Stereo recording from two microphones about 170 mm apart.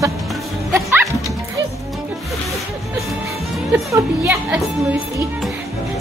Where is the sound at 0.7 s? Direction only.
15° right (ahead or behind).